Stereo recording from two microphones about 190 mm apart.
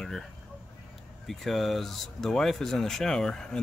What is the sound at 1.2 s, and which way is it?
Speech, centre (ahead or behind).